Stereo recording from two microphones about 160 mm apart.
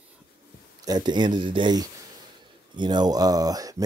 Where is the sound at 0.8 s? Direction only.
25° right (ahead or behind).